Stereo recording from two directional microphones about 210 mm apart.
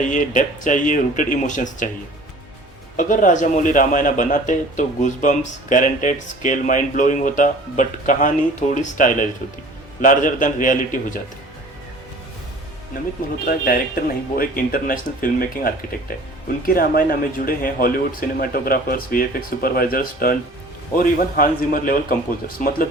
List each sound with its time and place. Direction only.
0.0 s speech: 35° left (ahead or behind)
3.0 s speech: 35° left (ahead or behind)
12.9 s speech: 40° left (ahead or behind)